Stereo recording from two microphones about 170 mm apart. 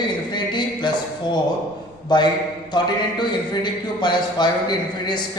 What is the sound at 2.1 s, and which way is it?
A man's voice, 25° left (ahead or behind).